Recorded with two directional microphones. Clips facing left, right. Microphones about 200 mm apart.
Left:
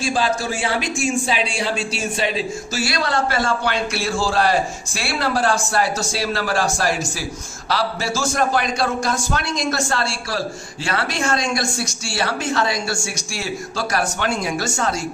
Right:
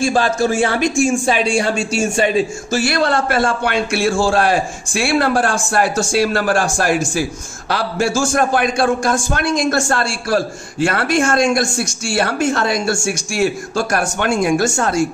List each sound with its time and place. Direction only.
0.0 s a man's voice: 50° right (ahead or behind)